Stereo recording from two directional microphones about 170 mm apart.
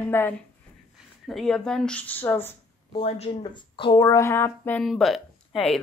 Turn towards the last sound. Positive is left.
turn(degrees=0)  # may be behind; listen again after turning